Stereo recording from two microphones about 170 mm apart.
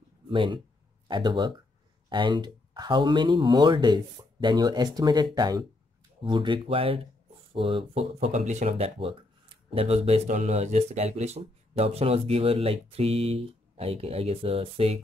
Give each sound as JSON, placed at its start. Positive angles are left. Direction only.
{"t": 0.3, "sound": "speech", "side_deg": -30}